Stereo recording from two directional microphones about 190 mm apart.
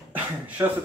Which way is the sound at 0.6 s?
15° right (ahead or behind).